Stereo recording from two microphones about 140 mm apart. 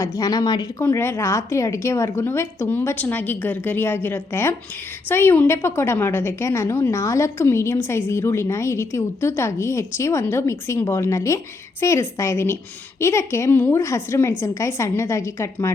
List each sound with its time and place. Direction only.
0.0 s a woman's voice: 25° left (ahead or behind)
0.8 s a woman's voice: 15° left (ahead or behind)